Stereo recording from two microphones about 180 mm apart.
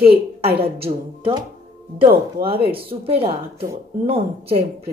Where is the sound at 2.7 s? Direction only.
30° right (ahead or behind).